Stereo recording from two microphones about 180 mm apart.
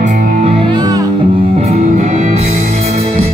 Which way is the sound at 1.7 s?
40° right (ahead or behind).